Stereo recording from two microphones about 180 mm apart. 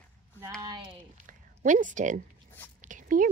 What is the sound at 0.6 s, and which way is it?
Speech, 25° right (ahead or behind).